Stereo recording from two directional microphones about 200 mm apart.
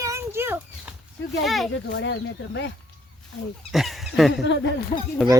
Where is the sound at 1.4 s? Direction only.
Centre (ahead or behind).